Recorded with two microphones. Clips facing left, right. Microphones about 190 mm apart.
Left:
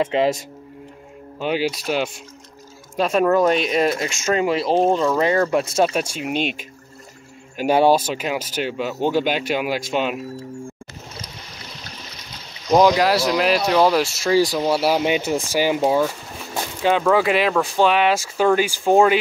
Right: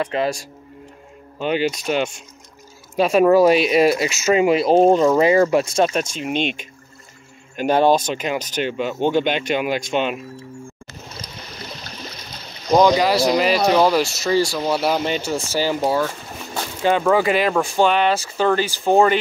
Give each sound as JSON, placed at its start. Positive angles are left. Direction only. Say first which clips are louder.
{"t": 0.0, "sound": "speech", "louder": "left 3 dB", "side_deg": 25}
{"t": 1.4, "sound": "speech", "louder": "right 1 dB", "side_deg": 5}
{"t": 5.2, "sound": "speech", "louder": "right 3 dB", "side_deg": -10}
{"t": 12.7, "sound": "speech", "louder": "even", "side_deg": 0}
{"t": 17.1, "sound": "speech", "louder": "even", "side_deg": 0}